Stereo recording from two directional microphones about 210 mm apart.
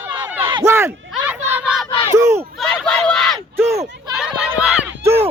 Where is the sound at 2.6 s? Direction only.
5° left (ahead or behind).